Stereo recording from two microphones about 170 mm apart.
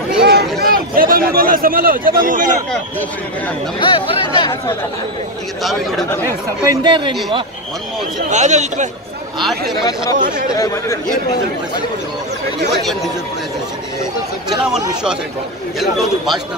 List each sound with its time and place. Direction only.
0.2 s a sound: 70° right (ahead or behind)
0.6 s speech: 60° right (ahead or behind)
3.8 s speech: 30° left (ahead or behind)
5.6 s speech: centre (ahead or behind)
6.2 s speech: 25° right (ahead or behind)
8.3 s speech: 45° right (ahead or behind)
10.1 s speech: 50° right (ahead or behind)
10.5 s speech: 20° left (ahead or behind)
14.5 s speech: centre (ahead or behind)